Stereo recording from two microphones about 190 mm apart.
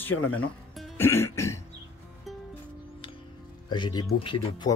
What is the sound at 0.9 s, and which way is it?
Music, 10° left (ahead or behind).